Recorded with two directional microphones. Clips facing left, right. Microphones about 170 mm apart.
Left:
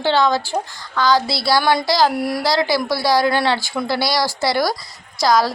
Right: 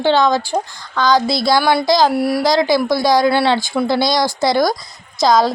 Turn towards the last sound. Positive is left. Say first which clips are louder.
# right 3 dB
turn(degrees=-20)  # may be behind; listen again after turning